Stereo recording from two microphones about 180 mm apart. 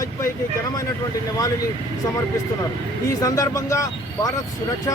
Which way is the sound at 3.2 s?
20° left (ahead or behind).